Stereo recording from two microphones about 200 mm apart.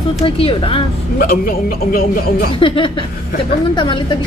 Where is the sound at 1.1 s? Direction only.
45° left (ahead or behind).